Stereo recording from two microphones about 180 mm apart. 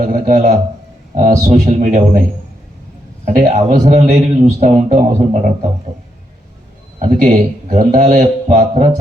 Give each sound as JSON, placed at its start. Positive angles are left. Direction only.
{"t": 0.0, "sound": "a man's voice", "side_deg": -50}
{"t": 3.2, "sound": "a man's voice", "side_deg": -45}
{"t": 7.0, "sound": "a man's voice", "side_deg": -50}